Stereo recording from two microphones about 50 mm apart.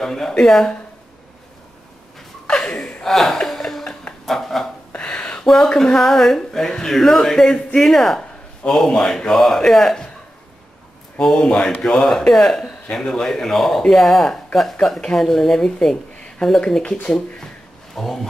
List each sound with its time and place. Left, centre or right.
0.0 s speech: centre
2.4 s a sound: centre
4.9 s a sound: left
5.4 s speech: centre
11.1 s speech: centre
17.9 s speech: centre